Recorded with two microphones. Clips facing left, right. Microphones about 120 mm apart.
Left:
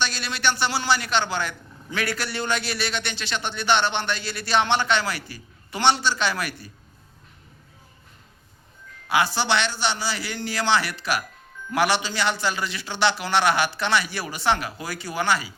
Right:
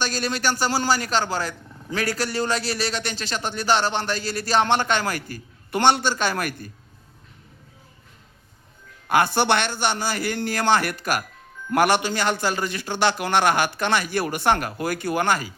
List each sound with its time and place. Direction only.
0.0 s a man's voice: 40° right (ahead or behind)
9.0 s a man's voice: 50° right (ahead or behind)